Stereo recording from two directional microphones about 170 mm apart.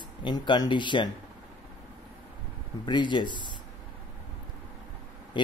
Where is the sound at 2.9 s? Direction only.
25° left (ahead or behind).